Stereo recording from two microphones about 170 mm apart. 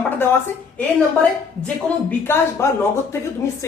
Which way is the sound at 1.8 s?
10° left (ahead or behind).